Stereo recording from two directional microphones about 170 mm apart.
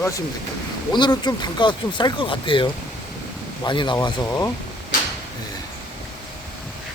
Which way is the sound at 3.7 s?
30° left (ahead or behind).